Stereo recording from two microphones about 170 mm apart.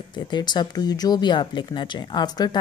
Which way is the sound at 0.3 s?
25° left (ahead or behind).